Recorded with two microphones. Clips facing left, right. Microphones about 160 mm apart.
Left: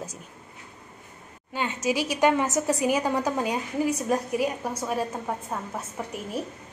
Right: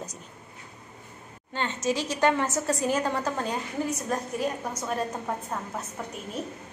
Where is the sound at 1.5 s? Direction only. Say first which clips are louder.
Left 1 dB; 10° left (ahead or behind).